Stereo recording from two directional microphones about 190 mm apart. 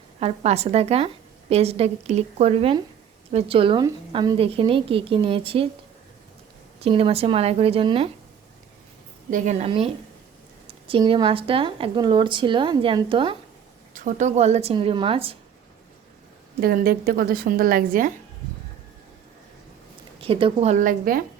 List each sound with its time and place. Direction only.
0.2 s a woman's voice: 35° right (ahead or behind)
6.7 s a woman's voice: 30° right (ahead or behind)
9.3 s a woman's voice: 40° right (ahead or behind)
13.9 s a woman's voice: 40° right (ahead or behind)
16.6 s a woman's voice: 50° right (ahead or behind)
20.1 s a woman's voice: 30° right (ahead or behind); by 21.2 s 45° right (ahead or behind)